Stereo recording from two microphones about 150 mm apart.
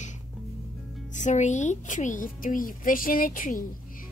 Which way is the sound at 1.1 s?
50° left (ahead or behind).